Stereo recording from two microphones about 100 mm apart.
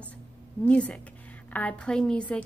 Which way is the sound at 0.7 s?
15° left (ahead or behind).